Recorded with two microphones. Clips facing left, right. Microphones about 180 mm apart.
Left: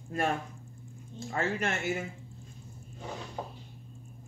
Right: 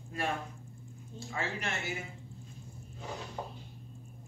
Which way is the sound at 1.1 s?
50° left (ahead or behind).